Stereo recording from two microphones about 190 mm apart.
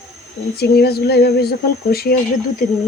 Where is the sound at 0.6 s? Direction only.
55° left (ahead or behind).